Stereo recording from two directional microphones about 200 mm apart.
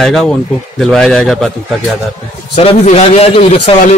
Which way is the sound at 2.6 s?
30° left (ahead or behind).